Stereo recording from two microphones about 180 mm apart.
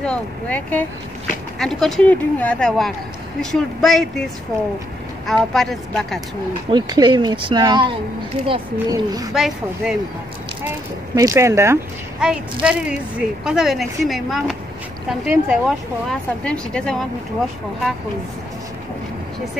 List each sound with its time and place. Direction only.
0.0 s speech: 5° left (ahead or behind)
5.2 s speech: centre (ahead or behind)
6.7 s speech: 25° right (ahead or behind)
9.3 s speech: centre (ahead or behind)
11.1 s speech: 15° right (ahead or behind)
12.2 s speech: 5° right (ahead or behind)